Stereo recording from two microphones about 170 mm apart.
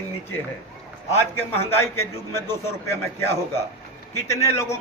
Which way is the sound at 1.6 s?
15° left (ahead or behind).